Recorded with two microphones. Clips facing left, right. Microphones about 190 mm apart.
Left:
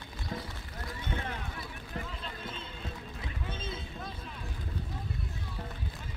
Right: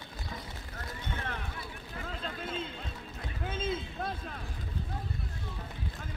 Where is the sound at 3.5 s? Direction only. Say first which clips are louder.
Right 6 dB; 90° right.